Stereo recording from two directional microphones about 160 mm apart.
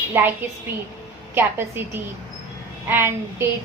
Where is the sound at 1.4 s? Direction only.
15° right (ahead or behind).